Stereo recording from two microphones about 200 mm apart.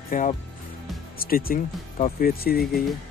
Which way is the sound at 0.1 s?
40° left (ahead or behind).